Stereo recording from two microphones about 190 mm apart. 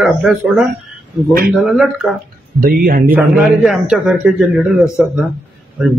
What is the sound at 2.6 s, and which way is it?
Speech, 50° right (ahead or behind).